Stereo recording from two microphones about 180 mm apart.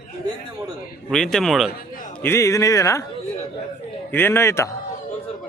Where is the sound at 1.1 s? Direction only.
5° left (ahead or behind).